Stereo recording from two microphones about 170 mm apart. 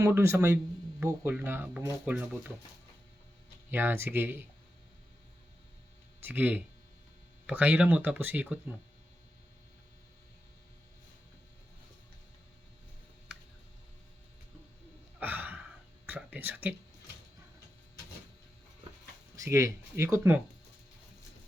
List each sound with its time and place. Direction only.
0.0 s speech: 15° right (ahead or behind)
3.7 s speech: 10° right (ahead or behind)
6.1 s speech: 10° right (ahead or behind)
15.2 s gasp: 10° right (ahead or behind)
16.0 s speech: 10° right (ahead or behind)
19.4 s speech: 15° right (ahead or behind)